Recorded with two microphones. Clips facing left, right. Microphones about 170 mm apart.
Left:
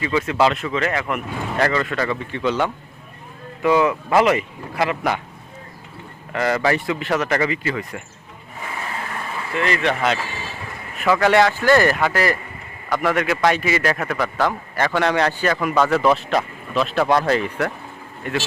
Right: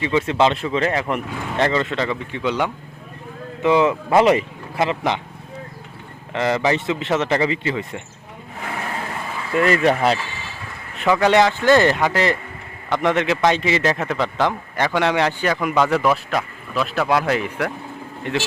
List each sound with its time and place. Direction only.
0.0 s speech: 25° right (ahead or behind)
6.3 s speech: 20° right (ahead or behind)
9.6 s speech: 40° right (ahead or behind)
10.9 s a man's voice: 20° right (ahead or behind)